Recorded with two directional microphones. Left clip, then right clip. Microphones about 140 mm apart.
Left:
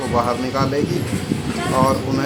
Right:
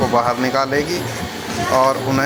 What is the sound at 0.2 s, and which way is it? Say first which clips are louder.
Speech: right 3 dB; 30° right (ahead or behind).